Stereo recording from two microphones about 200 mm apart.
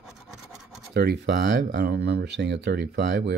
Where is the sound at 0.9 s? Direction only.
55° right (ahead or behind).